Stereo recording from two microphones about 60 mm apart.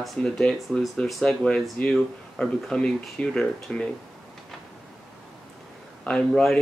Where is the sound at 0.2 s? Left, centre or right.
Centre.